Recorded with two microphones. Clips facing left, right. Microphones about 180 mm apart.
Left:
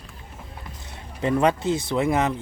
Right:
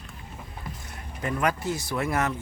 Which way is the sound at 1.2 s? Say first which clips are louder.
Left 6 dB; 25° left (ahead or behind).